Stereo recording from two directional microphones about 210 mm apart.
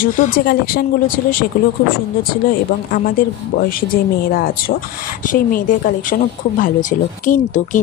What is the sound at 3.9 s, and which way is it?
Speech, 45° left (ahead or behind).